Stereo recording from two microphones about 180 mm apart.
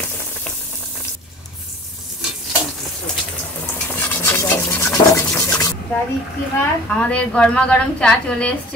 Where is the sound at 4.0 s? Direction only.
15° left (ahead or behind).